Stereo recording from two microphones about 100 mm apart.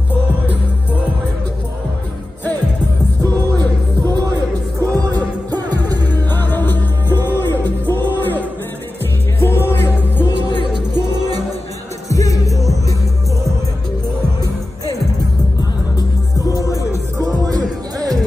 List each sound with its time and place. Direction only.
4.1 s music: 35° right (ahead or behind)
6.0 s music: 20° left (ahead or behind)
10.5 s music: 60° left (ahead or behind)
10.9 s music: 45° right (ahead or behind)
12.1 s music: 35° left (ahead or behind)
16.4 s music: 35° left (ahead or behind)
17.2 s music: 35° right (ahead or behind)